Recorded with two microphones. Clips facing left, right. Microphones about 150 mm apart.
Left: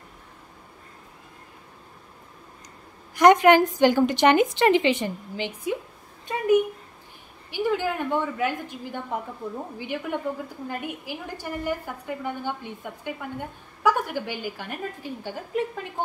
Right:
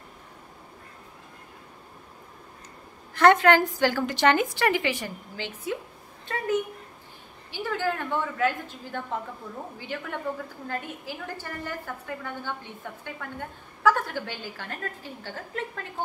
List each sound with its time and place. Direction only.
3.2 s a woman's voice: 15° left (ahead or behind)
6.2 s a sound: 15° left (ahead or behind)
7.5 s a woman's voice: 15° left (ahead or behind)